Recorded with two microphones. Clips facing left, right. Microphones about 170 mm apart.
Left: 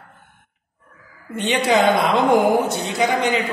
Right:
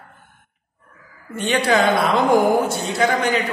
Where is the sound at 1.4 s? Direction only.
20° left (ahead or behind).